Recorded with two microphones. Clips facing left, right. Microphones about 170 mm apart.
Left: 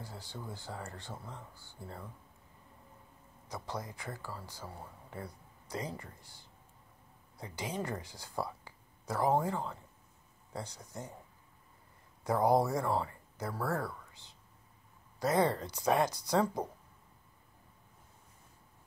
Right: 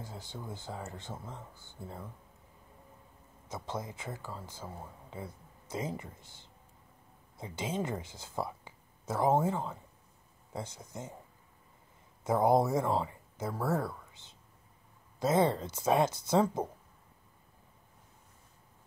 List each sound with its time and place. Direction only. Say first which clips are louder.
0.0 s speech: right 1 dB; 20° right (ahead or behind)
3.4 s speech: right 2 dB; 20° right (ahead or behind)
12.2 s speech: right 2 dB; 20° right (ahead or behind)